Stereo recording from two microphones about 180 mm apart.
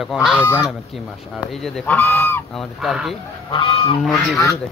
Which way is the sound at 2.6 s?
Centre (ahead or behind).